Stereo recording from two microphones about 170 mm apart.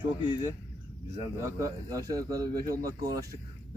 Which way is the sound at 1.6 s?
20° right (ahead or behind).